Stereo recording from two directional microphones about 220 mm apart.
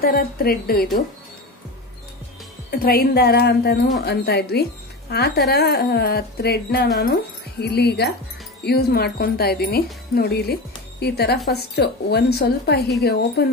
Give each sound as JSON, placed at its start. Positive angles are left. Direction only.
{"t": 0.0, "sound": "speech", "side_deg": 45}
{"t": 2.7, "sound": "speech", "side_deg": 45}